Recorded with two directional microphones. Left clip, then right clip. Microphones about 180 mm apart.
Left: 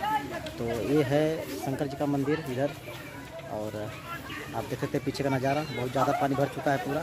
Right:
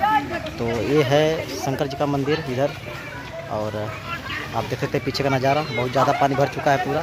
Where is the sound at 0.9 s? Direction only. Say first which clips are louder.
Right 8 dB; 5° right (ahead or behind).